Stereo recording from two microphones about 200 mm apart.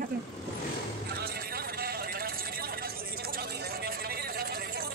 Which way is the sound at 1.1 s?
50° right (ahead or behind).